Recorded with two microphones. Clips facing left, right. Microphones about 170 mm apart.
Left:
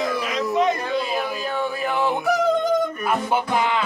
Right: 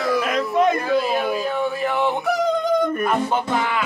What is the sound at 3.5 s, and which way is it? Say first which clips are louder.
Speech: left 1 dB; 20° left (ahead or behind).